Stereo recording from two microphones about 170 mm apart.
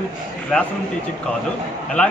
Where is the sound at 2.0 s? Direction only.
5° left (ahead or behind).